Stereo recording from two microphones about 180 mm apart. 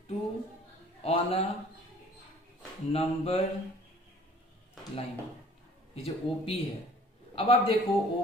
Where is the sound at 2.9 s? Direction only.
35° left (ahead or behind).